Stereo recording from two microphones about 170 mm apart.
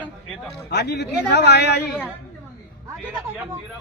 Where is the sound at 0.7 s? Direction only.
85° left.